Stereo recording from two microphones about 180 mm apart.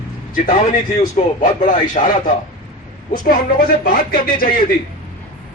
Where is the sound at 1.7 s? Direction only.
45° left (ahead or behind).